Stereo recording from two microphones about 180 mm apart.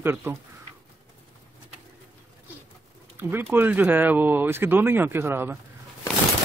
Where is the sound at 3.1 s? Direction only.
10° right (ahead or behind).